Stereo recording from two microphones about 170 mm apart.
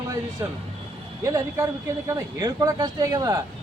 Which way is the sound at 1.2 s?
20° right (ahead or behind).